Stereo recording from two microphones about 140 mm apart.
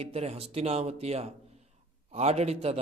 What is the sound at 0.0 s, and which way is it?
A man's voice, 45° right (ahead or behind).